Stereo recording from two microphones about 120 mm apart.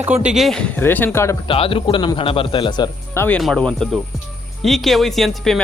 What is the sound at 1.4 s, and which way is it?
Speech, 50° left (ahead or behind).